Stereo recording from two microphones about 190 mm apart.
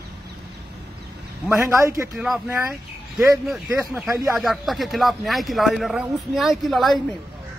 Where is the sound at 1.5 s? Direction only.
15° right (ahead or behind).